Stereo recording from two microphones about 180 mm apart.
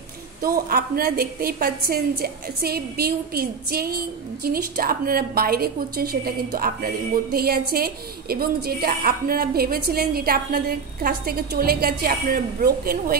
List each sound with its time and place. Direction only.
0.4 s a woman's voice: 55° right (ahead or behind)